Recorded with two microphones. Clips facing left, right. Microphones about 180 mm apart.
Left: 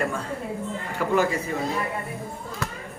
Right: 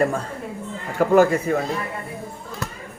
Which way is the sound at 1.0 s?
50° right (ahead or behind).